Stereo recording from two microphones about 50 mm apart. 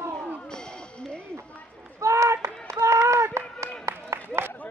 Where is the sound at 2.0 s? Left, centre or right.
Right.